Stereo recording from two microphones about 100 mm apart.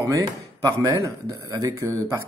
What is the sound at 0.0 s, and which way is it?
Speech, 35° right (ahead or behind).